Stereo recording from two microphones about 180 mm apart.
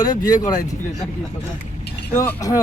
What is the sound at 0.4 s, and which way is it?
Speech, 20° left (ahead or behind).